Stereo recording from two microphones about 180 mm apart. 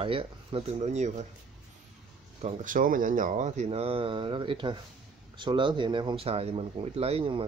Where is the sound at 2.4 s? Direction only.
45° right (ahead or behind).